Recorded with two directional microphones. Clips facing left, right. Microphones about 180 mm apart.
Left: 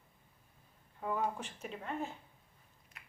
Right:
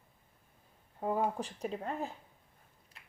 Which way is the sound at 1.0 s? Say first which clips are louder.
Right 4 dB; 35° right (ahead or behind).